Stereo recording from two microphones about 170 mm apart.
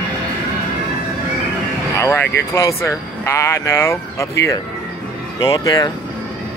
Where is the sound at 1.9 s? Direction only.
20° left (ahead or behind).